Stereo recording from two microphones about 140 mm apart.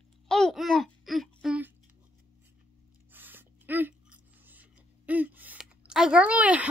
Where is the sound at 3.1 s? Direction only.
15° right (ahead or behind).